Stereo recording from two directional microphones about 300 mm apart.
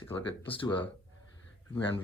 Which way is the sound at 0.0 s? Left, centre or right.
Centre.